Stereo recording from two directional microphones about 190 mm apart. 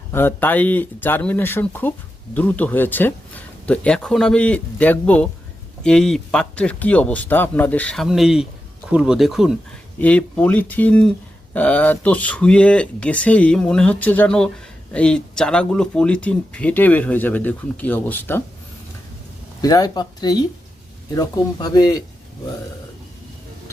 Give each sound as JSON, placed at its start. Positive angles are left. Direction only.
{"t": 0.1, "sound": "speech", "side_deg": 10}
{"t": 19.6, "sound": "speech", "side_deg": 20}